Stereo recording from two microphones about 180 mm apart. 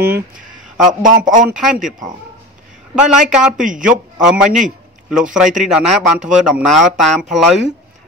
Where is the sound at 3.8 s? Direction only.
5° right (ahead or behind).